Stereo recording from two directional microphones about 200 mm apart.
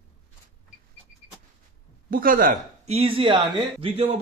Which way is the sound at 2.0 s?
45° right (ahead or behind).